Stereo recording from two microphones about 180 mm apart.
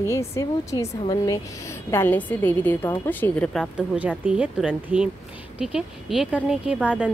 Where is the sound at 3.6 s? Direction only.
5° right (ahead or behind).